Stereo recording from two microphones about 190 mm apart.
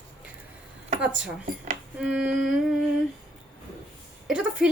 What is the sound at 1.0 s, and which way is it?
A woman's voice, 5° right (ahead or behind).